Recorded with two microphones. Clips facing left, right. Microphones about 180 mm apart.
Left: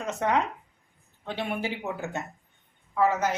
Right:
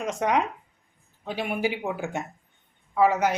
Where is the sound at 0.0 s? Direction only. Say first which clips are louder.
Right 2 dB; 15° right (ahead or behind).